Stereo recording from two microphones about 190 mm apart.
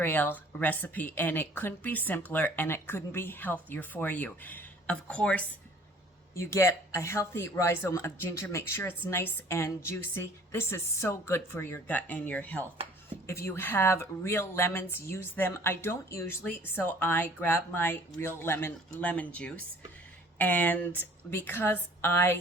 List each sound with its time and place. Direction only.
0.0 s speech: 10° left (ahead or behind)